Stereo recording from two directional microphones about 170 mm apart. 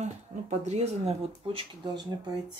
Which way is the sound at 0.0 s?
40° right (ahead or behind).